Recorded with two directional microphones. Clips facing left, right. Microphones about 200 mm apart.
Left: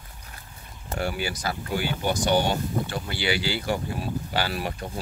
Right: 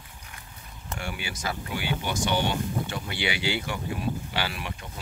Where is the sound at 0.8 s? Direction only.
40° left (ahead or behind).